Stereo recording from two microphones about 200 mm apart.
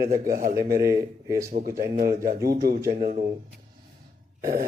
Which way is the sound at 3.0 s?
45° right (ahead or behind).